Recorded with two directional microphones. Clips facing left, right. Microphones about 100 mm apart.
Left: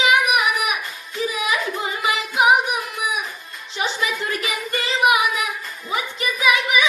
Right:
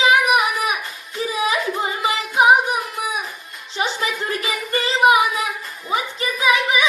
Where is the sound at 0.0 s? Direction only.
30° right (ahead or behind).